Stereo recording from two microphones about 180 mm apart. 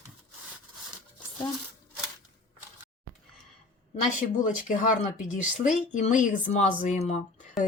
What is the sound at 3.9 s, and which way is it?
Speech, 45° left (ahead or behind).